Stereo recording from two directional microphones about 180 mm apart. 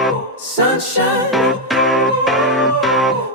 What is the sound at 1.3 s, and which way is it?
Music, centre (ahead or behind).